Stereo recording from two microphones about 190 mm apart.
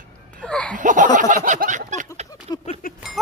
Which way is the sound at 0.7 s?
40° right (ahead or behind).